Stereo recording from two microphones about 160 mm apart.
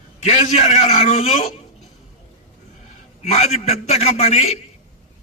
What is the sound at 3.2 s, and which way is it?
A man's voice, 45° left (ahead or behind).